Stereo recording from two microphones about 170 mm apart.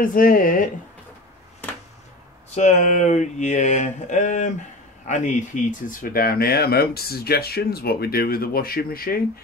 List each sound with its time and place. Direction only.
0.0 s speech: 55° left (ahead or behind)
2.5 s speech: 45° left (ahead or behind)